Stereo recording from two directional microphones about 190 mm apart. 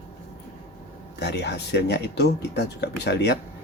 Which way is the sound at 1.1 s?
60° left (ahead or behind).